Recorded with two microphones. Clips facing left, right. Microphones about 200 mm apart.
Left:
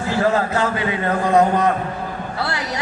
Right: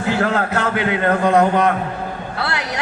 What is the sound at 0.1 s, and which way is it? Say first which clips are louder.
Speech: even; 65° right (ahead or behind).